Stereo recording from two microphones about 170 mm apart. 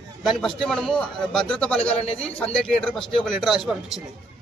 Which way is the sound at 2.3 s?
10° left (ahead or behind).